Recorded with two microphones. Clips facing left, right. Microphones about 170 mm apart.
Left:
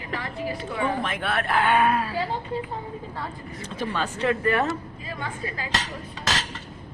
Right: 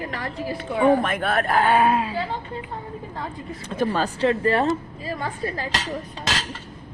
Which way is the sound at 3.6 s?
50° right (ahead or behind).